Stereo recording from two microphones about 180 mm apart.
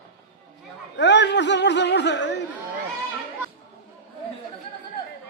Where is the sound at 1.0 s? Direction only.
75° left (ahead or behind).